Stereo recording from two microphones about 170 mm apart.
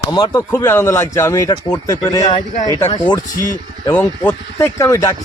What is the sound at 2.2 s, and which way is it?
Speech, 40° left (ahead or behind).